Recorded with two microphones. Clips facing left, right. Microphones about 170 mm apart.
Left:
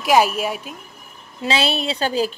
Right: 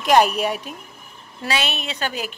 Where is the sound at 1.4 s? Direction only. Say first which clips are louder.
Left 4 dB; 30° left (ahead or behind).